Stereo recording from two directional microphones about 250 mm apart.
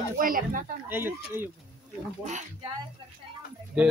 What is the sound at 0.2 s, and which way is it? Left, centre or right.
Speech, right.